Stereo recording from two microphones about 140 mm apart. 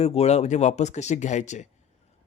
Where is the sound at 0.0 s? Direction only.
50° left (ahead or behind).